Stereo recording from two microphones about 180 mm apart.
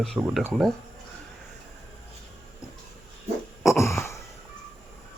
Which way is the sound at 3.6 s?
15° left (ahead or behind).